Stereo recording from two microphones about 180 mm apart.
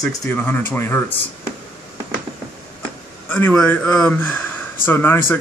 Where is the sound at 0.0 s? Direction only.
10° left (ahead or behind).